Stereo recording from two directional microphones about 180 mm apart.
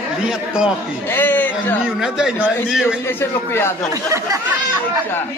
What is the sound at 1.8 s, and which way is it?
A man's voice, 5° right (ahead or behind).